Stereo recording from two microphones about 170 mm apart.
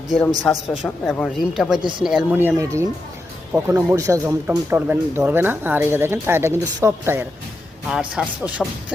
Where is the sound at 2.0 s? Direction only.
5° right (ahead or behind).